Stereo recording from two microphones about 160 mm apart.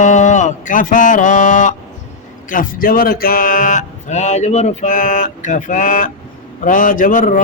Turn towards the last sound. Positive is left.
turn(degrees=55)  # may be behind; listen again after turning